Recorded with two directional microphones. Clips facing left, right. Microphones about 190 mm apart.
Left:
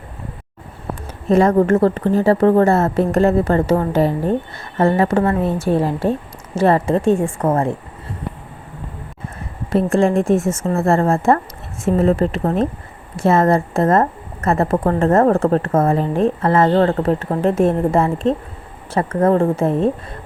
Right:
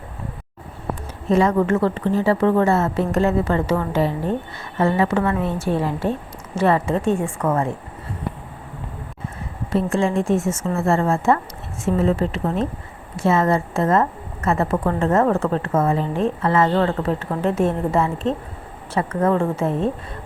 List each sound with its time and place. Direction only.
1.3 s a woman's voice: 50° left (ahead or behind)
9.7 s a woman's voice: 55° left (ahead or behind); by 19.9 s 40° left (ahead or behind)